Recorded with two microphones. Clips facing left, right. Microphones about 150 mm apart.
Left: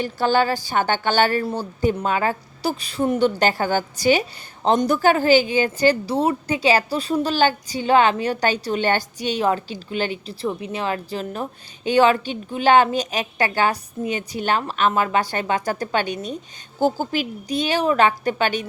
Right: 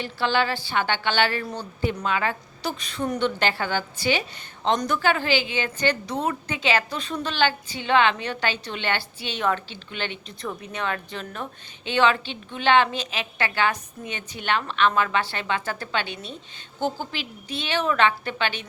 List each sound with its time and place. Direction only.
0.0 s a woman's voice: 45° left (ahead or behind)